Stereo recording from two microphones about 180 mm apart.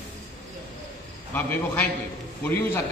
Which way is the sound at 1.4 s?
10° left (ahead or behind).